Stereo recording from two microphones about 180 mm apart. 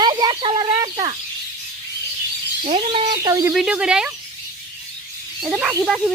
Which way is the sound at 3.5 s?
5° right (ahead or behind).